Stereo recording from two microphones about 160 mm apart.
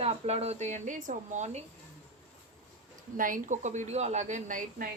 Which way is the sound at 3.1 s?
60° right (ahead or behind).